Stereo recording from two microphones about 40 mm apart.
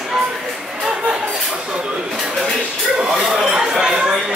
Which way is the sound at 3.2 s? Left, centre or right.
Centre.